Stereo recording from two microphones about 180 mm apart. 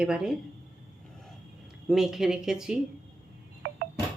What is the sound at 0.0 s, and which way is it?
Speech, 5° right (ahead or behind).